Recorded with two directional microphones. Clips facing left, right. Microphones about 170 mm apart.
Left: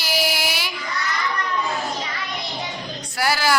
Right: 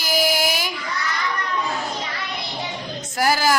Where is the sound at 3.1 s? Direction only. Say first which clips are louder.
Right 2 dB; 45° right (ahead or behind).